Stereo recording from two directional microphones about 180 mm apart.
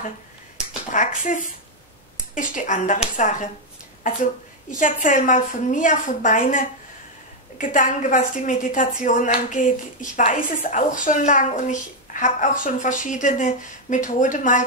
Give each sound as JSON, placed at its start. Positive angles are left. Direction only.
{"t": 0.6, "sound": "a woman's voice", "side_deg": 45}